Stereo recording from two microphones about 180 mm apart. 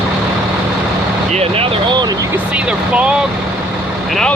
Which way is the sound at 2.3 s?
5° right (ahead or behind).